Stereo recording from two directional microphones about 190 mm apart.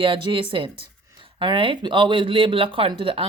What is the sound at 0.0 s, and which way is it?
Speech, 25° right (ahead or behind).